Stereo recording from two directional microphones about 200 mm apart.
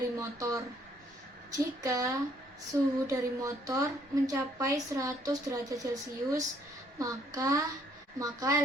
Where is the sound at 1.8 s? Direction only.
15° right (ahead or behind).